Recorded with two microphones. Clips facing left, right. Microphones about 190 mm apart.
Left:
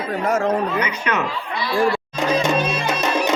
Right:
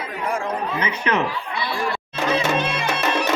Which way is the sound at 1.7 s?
55° left (ahead or behind).